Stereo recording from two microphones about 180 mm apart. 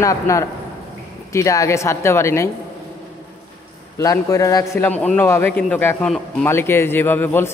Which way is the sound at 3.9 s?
15° left (ahead or behind).